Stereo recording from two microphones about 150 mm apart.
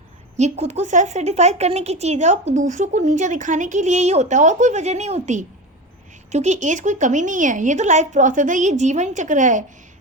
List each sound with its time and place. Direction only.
0.3 s a woman's voice: 50° right (ahead or behind)